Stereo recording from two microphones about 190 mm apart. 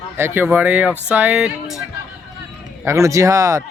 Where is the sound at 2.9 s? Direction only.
15° right (ahead or behind).